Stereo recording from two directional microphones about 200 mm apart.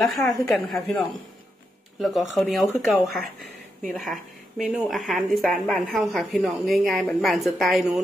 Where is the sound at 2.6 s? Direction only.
15° left (ahead or behind).